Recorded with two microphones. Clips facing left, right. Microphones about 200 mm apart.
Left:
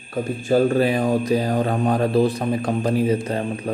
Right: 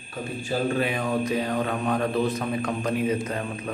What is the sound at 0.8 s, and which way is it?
A man's voice, 35° left (ahead or behind).